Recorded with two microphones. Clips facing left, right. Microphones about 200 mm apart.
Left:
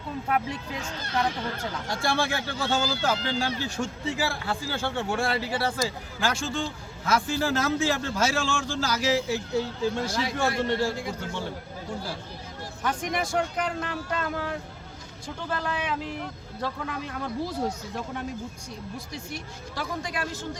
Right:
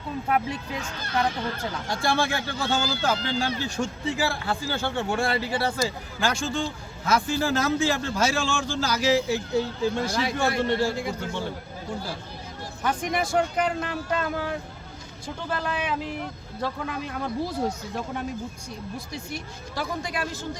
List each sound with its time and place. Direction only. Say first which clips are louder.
1.9 s speech: right 2 dB; 5° left (ahead or behind)
10.0 s a man's voice: right 2 dB; 65° right (ahead or behind)
12.8 s speech: right 2 dB; 5° right (ahead or behind)